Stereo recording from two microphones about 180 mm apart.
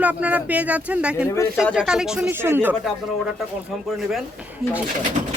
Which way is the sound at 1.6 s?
5° right (ahead or behind).